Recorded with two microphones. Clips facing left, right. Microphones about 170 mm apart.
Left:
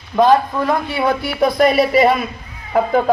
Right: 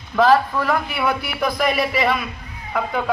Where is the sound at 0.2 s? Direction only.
15° left (ahead or behind).